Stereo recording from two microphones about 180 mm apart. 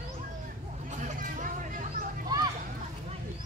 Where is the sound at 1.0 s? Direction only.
45° right (ahead or behind).